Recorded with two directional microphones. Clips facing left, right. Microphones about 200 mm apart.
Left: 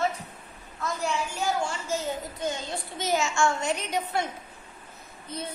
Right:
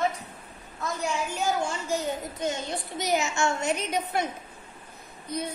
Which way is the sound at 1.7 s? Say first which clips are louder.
Right 1 dB; 20° right (ahead or behind).